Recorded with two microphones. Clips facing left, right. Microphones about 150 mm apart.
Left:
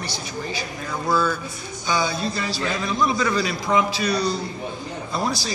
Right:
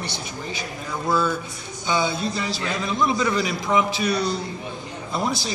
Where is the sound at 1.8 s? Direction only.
25° right (ahead or behind).